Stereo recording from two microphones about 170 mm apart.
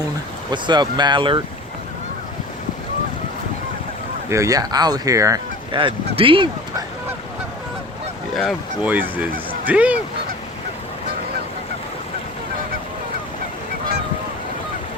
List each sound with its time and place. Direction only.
0.5 s speech: 25° right (ahead or behind)
4.3 s speech: 20° right (ahead or behind)
5.7 s speech: 30° right (ahead or behind)
8.4 s speech: centre (ahead or behind)
8.9 s speech: 10° right (ahead or behind)